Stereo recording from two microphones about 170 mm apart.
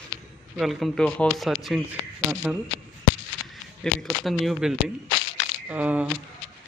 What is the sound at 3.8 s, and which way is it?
Speech, 5° left (ahead or behind).